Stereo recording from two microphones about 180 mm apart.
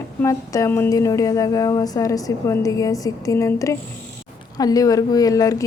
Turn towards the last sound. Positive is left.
turn(degrees=20)  # may be behind; listen again after turning